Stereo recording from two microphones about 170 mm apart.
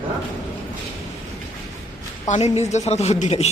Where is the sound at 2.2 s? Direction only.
45° left (ahead or behind).